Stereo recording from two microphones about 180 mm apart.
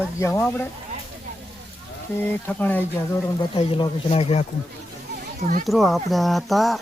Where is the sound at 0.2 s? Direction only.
15° left (ahead or behind).